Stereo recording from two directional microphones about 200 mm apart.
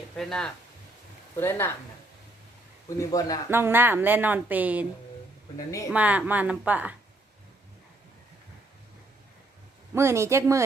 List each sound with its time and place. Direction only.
0.2 s speech: 5° left (ahead or behind)
3.0 s speech: 20° left (ahead or behind)
3.5 s a woman's voice: 10° right (ahead or behind)
5.5 s speech: 15° left (ahead or behind)
5.9 s a woman's voice: 5° right (ahead or behind)
9.9 s a woman's voice: 15° right (ahead or behind)